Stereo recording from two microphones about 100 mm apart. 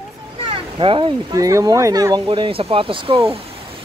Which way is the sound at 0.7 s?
55° right (ahead or behind).